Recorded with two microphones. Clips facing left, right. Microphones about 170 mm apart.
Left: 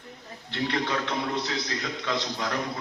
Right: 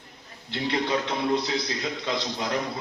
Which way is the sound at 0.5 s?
15° right (ahead or behind).